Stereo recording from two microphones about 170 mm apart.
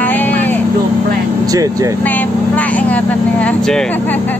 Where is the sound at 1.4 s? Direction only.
20° right (ahead or behind).